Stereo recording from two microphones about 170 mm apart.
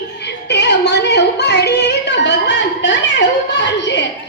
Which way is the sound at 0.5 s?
90° left.